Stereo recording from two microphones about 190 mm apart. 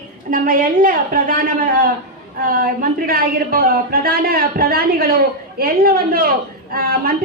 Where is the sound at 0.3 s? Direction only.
45° right (ahead or behind).